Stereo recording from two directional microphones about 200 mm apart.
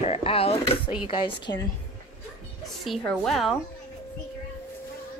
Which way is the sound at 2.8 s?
Centre (ahead or behind).